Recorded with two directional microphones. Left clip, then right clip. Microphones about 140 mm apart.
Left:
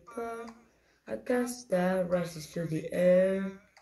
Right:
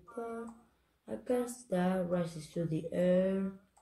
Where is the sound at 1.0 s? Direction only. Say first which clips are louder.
Left 3 dB; 5° right (ahead or behind).